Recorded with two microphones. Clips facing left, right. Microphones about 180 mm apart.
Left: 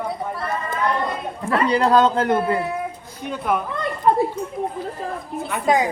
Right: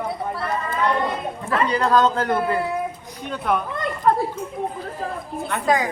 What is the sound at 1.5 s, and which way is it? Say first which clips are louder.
A man's voice: left 2 dB; 30° left (ahead or behind).